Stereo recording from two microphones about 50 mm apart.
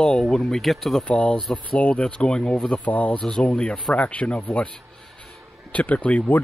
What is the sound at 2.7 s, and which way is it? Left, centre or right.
Speech, left.